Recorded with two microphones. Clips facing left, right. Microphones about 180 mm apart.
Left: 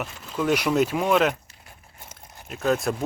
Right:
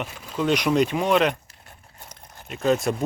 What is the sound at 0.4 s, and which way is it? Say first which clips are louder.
Speech: right 1 dB; 5° left (ahead or behind).